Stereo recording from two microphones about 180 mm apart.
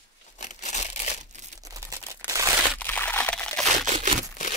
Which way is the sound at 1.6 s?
20° right (ahead or behind).